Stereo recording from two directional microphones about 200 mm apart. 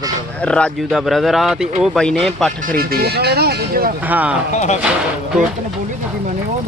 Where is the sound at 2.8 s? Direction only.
50° right (ahead or behind).